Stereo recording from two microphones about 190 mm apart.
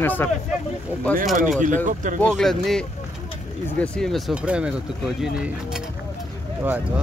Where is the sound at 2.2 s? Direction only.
Centre (ahead or behind).